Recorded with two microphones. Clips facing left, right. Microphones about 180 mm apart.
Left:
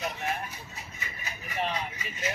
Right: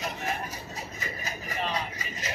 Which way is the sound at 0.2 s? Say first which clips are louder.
Even; 40° right (ahead or behind).